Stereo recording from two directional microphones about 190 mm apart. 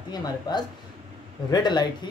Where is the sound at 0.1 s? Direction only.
20° left (ahead or behind).